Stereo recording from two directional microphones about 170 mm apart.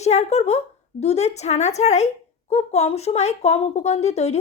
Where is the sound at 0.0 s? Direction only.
40° left (ahead or behind).